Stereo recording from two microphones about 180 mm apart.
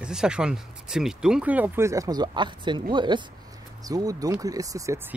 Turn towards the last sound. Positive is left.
turn(degrees=-15)  # may be behind; listen again after turning